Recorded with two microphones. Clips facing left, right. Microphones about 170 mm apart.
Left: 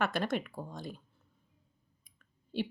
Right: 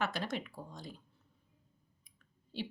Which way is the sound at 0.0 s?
55° left (ahead or behind).